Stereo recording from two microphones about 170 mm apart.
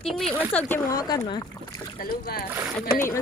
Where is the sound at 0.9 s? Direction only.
20° left (ahead or behind).